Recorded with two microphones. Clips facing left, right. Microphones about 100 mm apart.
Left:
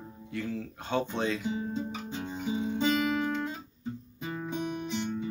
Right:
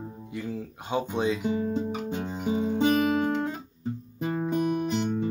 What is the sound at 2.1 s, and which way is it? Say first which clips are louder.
Guitar: right 4 dB; 55° right (ahead or behind).